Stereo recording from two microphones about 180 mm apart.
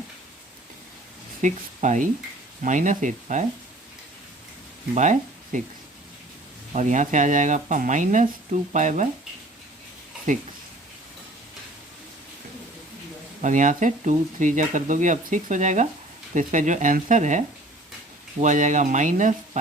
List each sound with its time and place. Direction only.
1.4 s speech: 45° right (ahead or behind)
4.9 s speech: 45° right (ahead or behind)
6.7 s speech: 45° right (ahead or behind)
10.3 s speech: 45° right (ahead or behind)
13.4 s speech: 45° right (ahead or behind)
18.4 s speech: 45° right (ahead or behind)